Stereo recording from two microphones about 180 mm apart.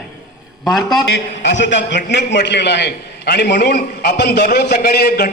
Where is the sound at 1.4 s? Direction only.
85° left.